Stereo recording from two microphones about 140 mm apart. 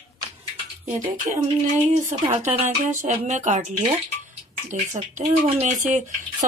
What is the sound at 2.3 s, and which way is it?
Speech, 50° right (ahead or behind).